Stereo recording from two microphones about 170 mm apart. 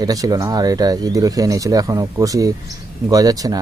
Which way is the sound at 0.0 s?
20° right (ahead or behind).